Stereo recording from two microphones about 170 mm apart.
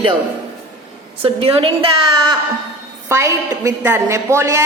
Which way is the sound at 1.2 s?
35° right (ahead or behind).